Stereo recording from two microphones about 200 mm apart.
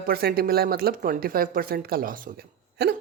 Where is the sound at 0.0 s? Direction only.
50° right (ahead or behind).